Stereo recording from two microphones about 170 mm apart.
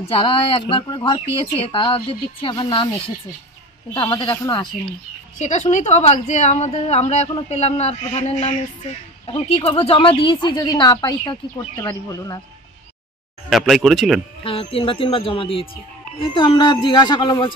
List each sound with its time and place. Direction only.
0.2 s a woman's voice: 30° left (ahead or behind)
3.9 s a woman's voice: 25° left (ahead or behind)
5.4 s a woman's voice: 45° left (ahead or behind); by 12.4 s 20° left (ahead or behind)
13.5 s speech: centre (ahead or behind)
14.4 s a woman's voice: 35° left (ahead or behind)